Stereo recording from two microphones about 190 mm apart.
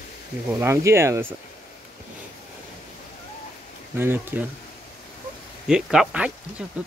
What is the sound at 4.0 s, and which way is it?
Speech, 10° right (ahead or behind).